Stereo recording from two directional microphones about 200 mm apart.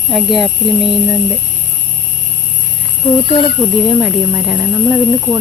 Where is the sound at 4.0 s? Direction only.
10° right (ahead or behind).